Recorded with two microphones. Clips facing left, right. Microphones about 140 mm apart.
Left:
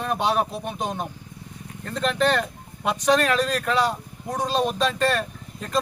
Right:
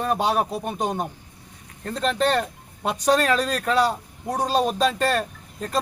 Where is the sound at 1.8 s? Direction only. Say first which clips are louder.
Even; 35° right (ahead or behind).